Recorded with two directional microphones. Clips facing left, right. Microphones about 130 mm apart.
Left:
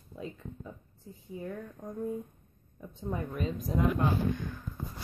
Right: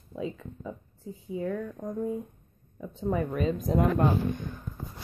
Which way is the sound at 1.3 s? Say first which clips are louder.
Right 8 dB; 90° right.